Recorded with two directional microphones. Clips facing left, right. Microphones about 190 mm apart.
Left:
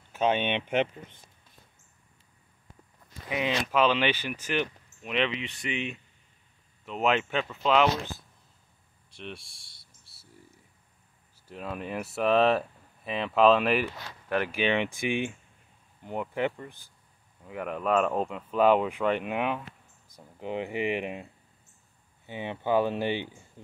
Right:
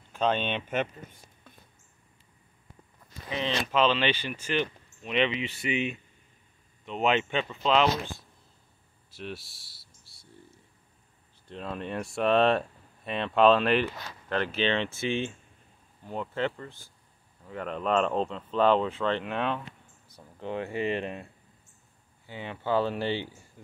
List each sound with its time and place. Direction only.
0.1 s a sound: 10° left (ahead or behind)
0.5 s speech: 15° left (ahead or behind)
3.3 s speech: 10° left (ahead or behind)
9.1 s cricket: centre (ahead or behind)
11.4 s speech: 10° left (ahead or behind)